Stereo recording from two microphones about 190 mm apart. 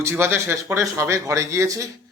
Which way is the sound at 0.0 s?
15° right (ahead or behind).